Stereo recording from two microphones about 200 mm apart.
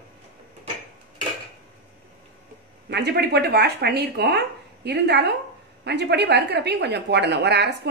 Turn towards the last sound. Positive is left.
turn(degrees=-55)  # may be behind; listen again after turning